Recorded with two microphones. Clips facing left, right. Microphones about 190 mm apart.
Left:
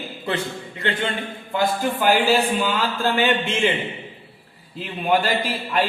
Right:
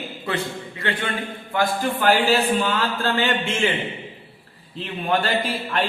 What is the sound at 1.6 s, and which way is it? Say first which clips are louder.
Speech: even; 15° left (ahead or behind).